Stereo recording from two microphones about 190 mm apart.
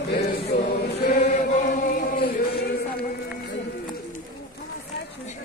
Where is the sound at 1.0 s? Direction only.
45° left (ahead or behind).